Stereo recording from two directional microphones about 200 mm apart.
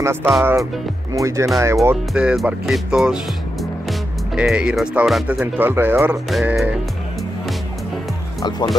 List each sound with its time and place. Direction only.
0.0 s speech: 10° right (ahead or behind)
4.4 s speech: 5° right (ahead or behind)
8.4 s speech: 20° left (ahead or behind)